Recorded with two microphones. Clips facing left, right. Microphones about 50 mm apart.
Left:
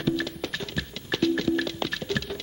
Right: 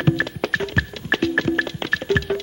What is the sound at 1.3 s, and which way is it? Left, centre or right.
Music, right.